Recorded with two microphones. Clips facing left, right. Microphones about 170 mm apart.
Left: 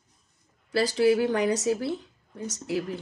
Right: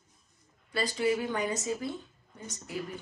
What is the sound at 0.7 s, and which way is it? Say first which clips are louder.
Speech: left 7 dB; 80° left.